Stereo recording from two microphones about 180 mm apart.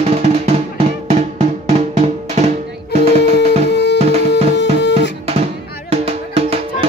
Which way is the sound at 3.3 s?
70° left (ahead or behind).